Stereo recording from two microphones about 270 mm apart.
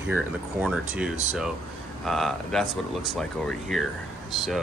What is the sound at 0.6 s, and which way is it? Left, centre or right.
Speech, centre.